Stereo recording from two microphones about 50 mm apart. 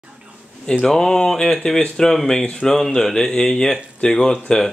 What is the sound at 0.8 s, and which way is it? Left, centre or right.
Speech, centre.